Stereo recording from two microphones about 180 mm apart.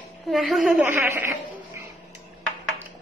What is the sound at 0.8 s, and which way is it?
Speech, 15° right (ahead or behind).